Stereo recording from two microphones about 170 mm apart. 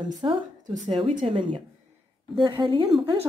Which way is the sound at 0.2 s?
25° right (ahead or behind).